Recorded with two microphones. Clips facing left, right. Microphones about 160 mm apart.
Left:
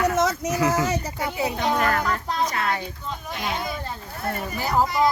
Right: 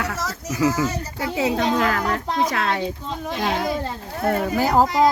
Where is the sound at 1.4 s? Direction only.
90° right.